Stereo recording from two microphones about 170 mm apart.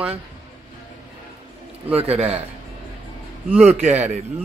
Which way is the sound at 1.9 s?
35° right (ahead or behind).